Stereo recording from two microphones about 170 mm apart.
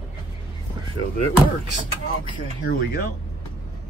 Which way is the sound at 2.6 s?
60° left (ahead or behind).